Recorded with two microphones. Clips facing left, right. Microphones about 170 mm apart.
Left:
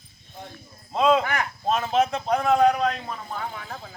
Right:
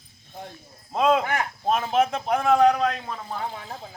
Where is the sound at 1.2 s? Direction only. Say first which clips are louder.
Right 1 dB; 25° right (ahead or behind).